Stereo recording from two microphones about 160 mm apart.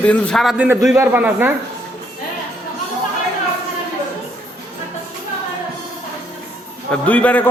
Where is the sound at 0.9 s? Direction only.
10° right (ahead or behind).